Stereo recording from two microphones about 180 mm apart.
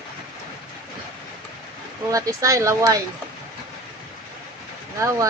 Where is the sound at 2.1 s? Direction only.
20° right (ahead or behind).